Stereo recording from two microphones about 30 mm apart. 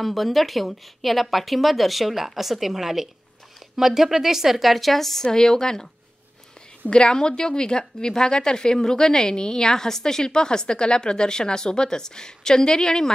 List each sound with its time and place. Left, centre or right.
0.0 s a woman's voice: centre
5.2 s a woman's voice: centre
6.9 s a woman's voice: left